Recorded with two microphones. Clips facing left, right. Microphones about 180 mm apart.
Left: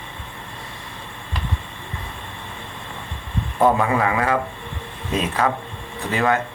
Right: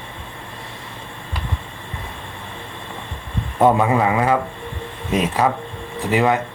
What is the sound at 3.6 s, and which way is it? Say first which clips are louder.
A man's voice: right 2 dB; 20° right (ahead or behind).